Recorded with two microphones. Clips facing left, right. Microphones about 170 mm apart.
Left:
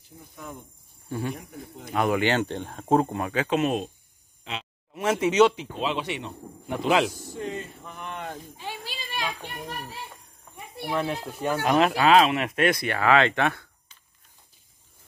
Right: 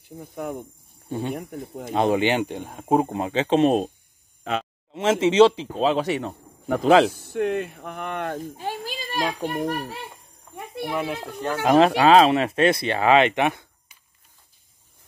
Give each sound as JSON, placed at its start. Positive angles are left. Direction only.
{"t": 0.2, "sound": "speech", "side_deg": -60}
{"t": 1.0, "sound": "speech", "side_deg": -20}
{"t": 4.5, "sound": "speech", "side_deg": -50}
{"t": 4.9, "sound": "speech", "side_deg": -25}
{"t": 7.1, "sound": "speech", "side_deg": -60}
{"t": 8.8, "sound": "a child's voice", "side_deg": -40}
{"t": 9.7, "sound": "speech", "side_deg": -60}
{"t": 10.9, "sound": "speech", "side_deg": -5}
{"t": 11.6, "sound": "speech", "side_deg": -30}